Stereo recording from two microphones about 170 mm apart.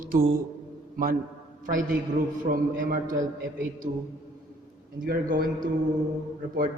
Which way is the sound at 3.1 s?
20° right (ahead or behind).